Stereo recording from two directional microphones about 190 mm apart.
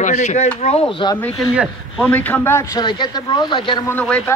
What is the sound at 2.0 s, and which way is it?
A man's voice, 10° left (ahead or behind).